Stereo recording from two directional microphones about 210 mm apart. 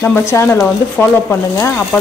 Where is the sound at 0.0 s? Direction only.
10° left (ahead or behind).